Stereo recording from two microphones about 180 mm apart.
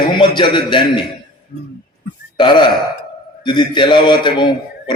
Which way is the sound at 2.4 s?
25° left (ahead or behind).